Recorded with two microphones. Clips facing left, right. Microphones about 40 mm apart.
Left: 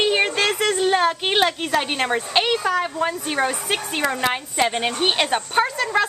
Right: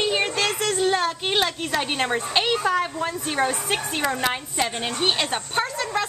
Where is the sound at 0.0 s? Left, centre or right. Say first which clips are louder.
Left 4 dB; left.